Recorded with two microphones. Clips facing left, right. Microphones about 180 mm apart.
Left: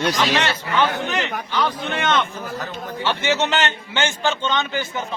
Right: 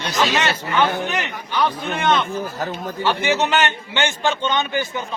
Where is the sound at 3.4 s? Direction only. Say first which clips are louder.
Right 2 dB; 15° right (ahead or behind).